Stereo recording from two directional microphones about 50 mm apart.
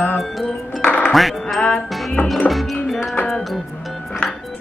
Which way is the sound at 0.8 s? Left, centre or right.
Left.